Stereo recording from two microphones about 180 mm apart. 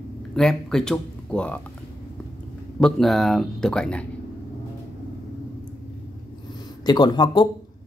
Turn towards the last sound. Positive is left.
turn(degrees=25)  # may be behind; listen again after turning